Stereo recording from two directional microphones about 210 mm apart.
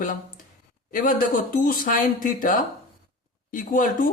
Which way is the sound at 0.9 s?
40° left (ahead or behind).